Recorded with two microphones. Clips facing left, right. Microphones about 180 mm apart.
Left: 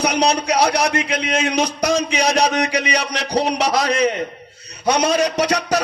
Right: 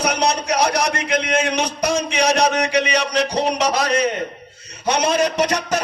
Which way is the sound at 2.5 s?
35° right (ahead or behind).